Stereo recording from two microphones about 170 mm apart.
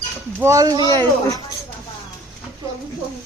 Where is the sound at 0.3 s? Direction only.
15° right (ahead or behind).